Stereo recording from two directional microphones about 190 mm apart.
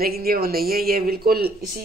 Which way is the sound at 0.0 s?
50° right (ahead or behind).